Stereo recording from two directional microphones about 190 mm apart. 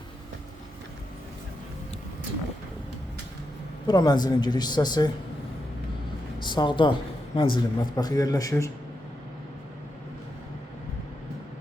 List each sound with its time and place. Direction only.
3.8 s speech: 20° left (ahead or behind)
6.4 s speech: 25° left (ahead or behind)